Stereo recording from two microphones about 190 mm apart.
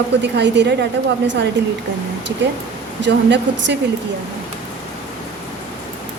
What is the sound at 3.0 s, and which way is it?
Speech, 65° right (ahead or behind).